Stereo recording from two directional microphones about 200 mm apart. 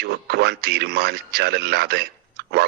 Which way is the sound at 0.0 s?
55° right (ahead or behind).